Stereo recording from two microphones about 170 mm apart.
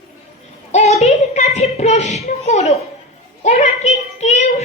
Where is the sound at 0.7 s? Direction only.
40° left (ahead or behind).